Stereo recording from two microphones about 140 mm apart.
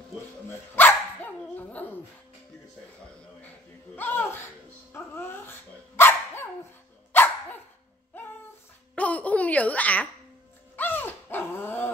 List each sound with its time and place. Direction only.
0.5 s dog: 15° left (ahead or behind)
3.9 s a sound: 15° left (ahead or behind)
4.9 s dog: 15° left (ahead or behind)
8.1 s music: 15° left (ahead or behind)
8.9 s a sound: 10° left (ahead or behind)
10.8 s dog: 15° left (ahead or behind)